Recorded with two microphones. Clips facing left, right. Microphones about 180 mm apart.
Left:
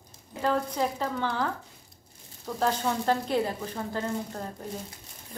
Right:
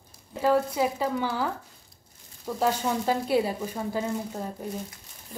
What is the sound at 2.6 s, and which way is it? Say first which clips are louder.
Speech: right 1 dB; 10° right (ahead or behind).